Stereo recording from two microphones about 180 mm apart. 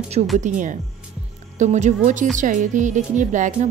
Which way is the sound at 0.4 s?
45° right (ahead or behind).